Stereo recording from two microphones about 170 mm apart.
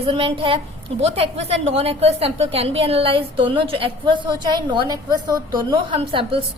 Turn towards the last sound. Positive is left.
turn(degrees=-30)  # may be behind; listen again after turning